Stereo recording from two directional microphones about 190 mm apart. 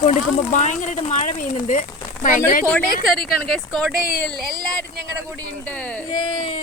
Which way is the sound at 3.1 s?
50° left (ahead or behind).